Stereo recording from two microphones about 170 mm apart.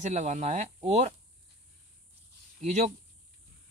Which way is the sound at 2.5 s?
45° right (ahead or behind).